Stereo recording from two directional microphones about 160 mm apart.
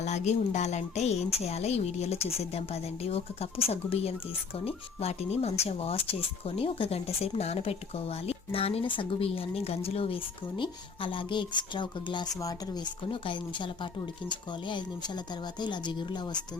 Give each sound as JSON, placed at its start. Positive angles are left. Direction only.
{"t": 0.0, "sound": "speech", "side_deg": 45}